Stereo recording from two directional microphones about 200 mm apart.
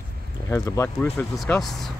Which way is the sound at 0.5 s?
15° left (ahead or behind).